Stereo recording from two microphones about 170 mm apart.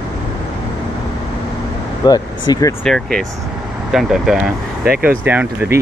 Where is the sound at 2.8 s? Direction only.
5° left (ahead or behind).